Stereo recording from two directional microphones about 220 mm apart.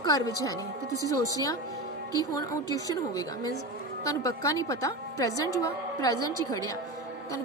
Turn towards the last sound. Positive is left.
turn(degrees=15)  # may be behind; listen again after turning